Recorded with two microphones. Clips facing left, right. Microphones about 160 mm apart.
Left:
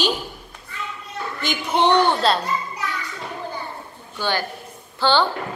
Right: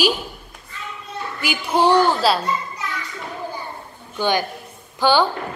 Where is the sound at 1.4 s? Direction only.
10° right (ahead or behind).